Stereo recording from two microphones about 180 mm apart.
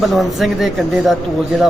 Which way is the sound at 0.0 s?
Centre (ahead or behind).